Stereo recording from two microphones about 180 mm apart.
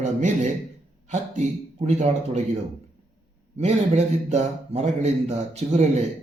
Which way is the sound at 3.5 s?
35° right (ahead or behind).